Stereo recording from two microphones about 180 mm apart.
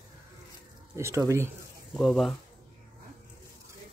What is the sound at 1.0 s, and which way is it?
Speech, 15° right (ahead or behind).